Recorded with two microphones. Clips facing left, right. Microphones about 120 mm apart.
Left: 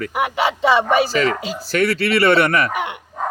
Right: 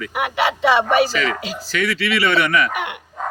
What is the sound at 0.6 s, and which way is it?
Speech, 35° left (ahead or behind).